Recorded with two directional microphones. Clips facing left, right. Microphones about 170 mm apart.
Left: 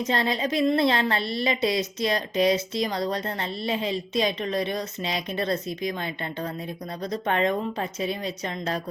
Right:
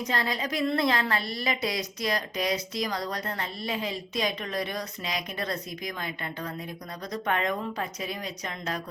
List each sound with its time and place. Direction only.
0.0 s a woman's voice: 25° left (ahead or behind)